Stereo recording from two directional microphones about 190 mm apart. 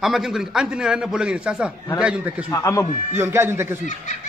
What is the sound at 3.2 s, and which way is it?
Speech, 15° right (ahead or behind).